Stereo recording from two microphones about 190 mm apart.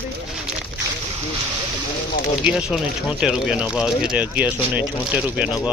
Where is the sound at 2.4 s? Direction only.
5° right (ahead or behind).